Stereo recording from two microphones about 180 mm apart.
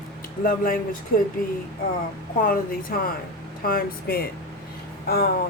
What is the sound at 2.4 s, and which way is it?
A woman's voice, 50° left (ahead or behind).